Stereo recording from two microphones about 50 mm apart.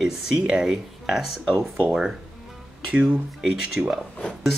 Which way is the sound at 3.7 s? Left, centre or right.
Centre.